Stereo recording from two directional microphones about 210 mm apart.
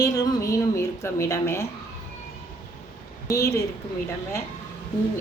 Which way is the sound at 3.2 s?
15° left (ahead or behind).